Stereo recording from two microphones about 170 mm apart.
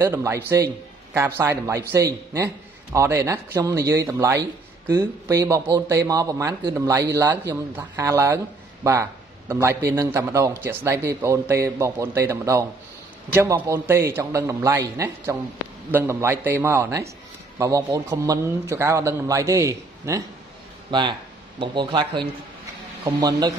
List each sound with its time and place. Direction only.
0.0 s a man's voice: 15° right (ahead or behind)
1.4 s a man's voice: 15° right (ahead or behind)